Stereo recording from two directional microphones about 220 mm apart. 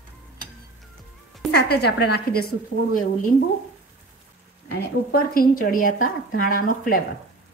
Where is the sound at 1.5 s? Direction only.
45° left (ahead or behind).